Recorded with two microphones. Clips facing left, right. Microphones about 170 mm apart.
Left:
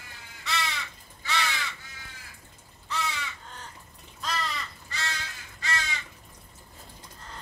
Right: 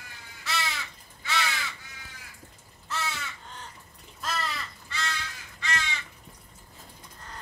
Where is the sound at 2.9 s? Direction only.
Centre (ahead or behind).